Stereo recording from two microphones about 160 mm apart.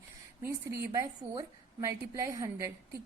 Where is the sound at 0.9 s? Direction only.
20° right (ahead or behind).